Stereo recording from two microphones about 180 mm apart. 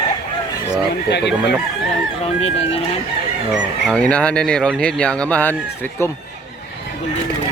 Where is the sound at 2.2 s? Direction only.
35° left (ahead or behind).